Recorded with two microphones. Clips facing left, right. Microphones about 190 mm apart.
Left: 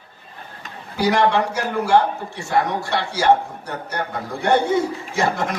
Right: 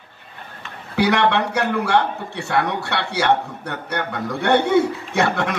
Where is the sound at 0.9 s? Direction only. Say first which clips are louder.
Even; 65° right (ahead or behind).